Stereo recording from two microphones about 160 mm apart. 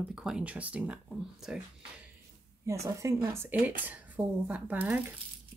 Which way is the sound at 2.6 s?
20° right (ahead or behind).